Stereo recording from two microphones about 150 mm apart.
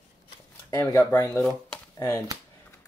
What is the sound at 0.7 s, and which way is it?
Speech, 20° left (ahead or behind).